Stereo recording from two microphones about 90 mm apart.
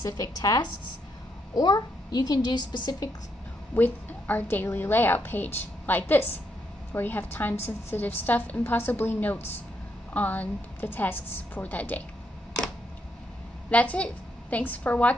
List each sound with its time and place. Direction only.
0.0 s a child's voice: 45° left (ahead or behind)
3.7 s a woman's voice: 20° left (ahead or behind)
13.7 s a woman's voice: 15° left (ahead or behind)